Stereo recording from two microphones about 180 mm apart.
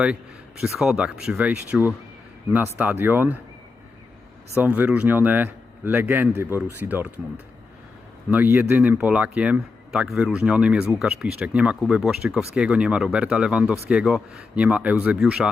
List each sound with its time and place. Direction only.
0.6 s speech: centre (ahead or behind)
4.5 s speech: 10° right (ahead or behind)
8.3 s speech: 10° right (ahead or behind)